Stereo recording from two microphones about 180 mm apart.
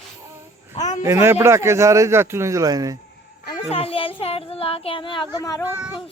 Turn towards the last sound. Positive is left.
turn(degrees=20)  # may be behind; listen again after turning